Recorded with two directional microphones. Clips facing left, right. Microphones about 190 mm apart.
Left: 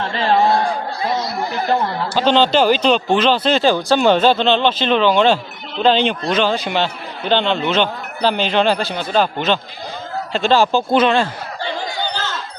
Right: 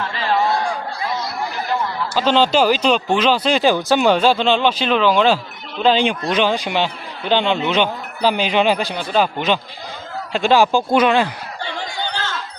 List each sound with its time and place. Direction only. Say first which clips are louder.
0.0 s a sound: left 4 dB; 30° left (ahead or behind)
1.6 s chatter: left 5 dB; 35° left (ahead or behind)
2.1 s a man's voice: left 1 dB; 5° right (ahead or behind)